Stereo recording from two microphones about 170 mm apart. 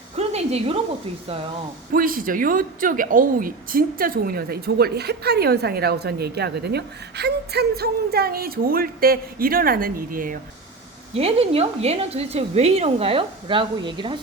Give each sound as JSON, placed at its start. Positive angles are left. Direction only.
{"t": 0.2, "sound": "a sound", "side_deg": -40}
{"t": 1.9, "sound": "a woman's voice", "side_deg": -55}
{"t": 11.1, "sound": "a woman's voice", "side_deg": -35}